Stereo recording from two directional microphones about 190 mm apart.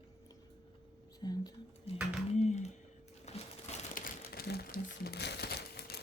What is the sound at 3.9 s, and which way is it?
Crumpling, 50° left (ahead or behind).